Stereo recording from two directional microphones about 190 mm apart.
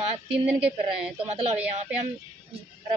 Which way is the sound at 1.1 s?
35° right (ahead or behind).